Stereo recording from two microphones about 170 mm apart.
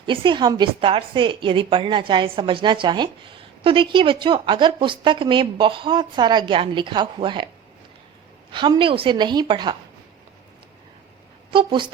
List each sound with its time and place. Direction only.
0.0 s a woman's voice: 30° right (ahead or behind)
8.5 s a woman's voice: 30° right (ahead or behind)
11.5 s a woman's voice: 30° right (ahead or behind)